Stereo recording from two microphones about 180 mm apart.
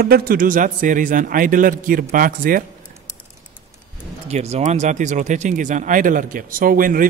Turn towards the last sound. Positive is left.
turn(degrees=-50)  # may be behind; listen again after turning